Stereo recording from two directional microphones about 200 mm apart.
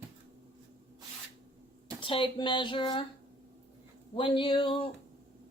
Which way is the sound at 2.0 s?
25° left (ahead or behind).